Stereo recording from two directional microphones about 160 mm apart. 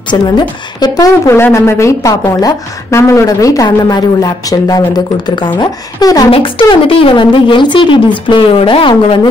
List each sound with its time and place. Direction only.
0.1 s a woman's voice: 25° left (ahead or behind)